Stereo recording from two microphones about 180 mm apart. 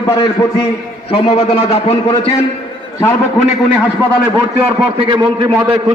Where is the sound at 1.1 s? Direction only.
35° left (ahead or behind).